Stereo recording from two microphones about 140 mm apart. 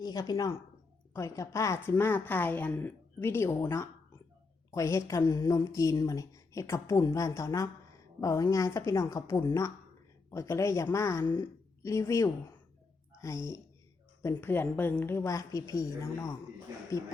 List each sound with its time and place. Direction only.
0.0 s a woman's voice: 25° left (ahead or behind)